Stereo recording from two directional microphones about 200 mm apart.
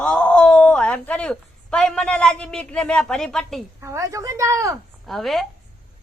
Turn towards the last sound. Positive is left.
turn(degrees=0)  # may be behind; listen again after turning